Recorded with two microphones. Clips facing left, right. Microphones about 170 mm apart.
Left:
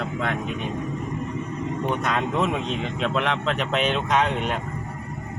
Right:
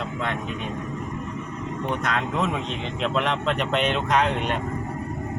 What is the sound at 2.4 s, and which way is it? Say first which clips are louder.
Speech: left 2 dB; centre (ahead or behind).